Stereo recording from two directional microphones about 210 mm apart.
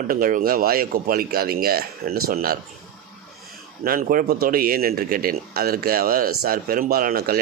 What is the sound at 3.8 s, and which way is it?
A man's voice, 45° right (ahead or behind).